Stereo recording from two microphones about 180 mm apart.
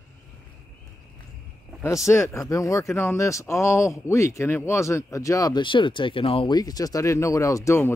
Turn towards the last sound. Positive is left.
turn(degrees=15)  # may be behind; listen again after turning